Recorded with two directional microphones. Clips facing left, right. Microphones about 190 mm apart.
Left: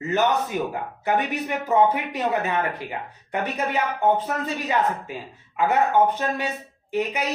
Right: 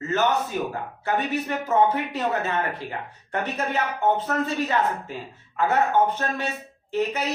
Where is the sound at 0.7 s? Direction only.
15° left (ahead or behind).